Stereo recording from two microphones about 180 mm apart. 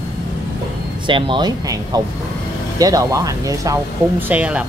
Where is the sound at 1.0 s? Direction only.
25° right (ahead or behind).